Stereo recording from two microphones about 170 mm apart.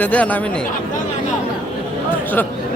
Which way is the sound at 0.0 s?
10° left (ahead or behind).